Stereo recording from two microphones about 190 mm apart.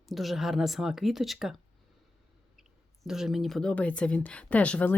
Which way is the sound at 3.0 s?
Centre (ahead or behind).